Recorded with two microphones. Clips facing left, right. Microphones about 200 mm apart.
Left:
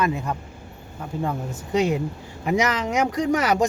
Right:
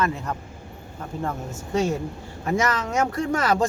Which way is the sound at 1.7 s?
15° left (ahead or behind).